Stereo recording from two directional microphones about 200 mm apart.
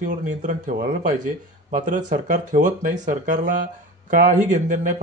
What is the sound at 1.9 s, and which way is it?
Speech, 40° right (ahead or behind).